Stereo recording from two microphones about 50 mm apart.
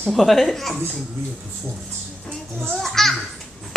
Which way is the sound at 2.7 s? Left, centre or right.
Centre.